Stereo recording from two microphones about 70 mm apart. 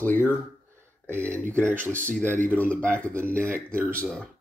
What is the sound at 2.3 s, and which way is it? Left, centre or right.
Speech, left.